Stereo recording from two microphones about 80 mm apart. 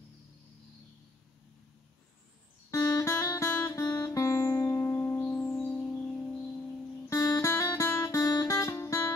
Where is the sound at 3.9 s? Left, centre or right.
Left.